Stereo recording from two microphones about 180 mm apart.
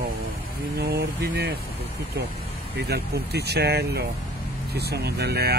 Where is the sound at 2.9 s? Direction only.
65° right (ahead or behind).